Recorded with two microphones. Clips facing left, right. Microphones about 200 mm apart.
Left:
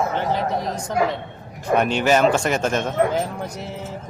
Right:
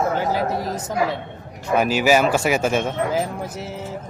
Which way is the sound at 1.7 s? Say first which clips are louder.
Right 1 dB; 5° right (ahead or behind).